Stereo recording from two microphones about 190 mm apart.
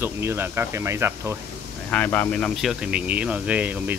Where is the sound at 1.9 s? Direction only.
10° left (ahead or behind).